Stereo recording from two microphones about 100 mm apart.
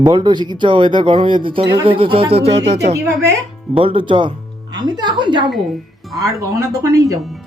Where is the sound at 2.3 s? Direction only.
90° right.